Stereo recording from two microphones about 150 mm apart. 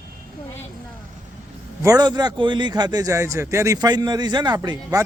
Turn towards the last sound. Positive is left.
turn(degrees=-25)  # may be behind; listen again after turning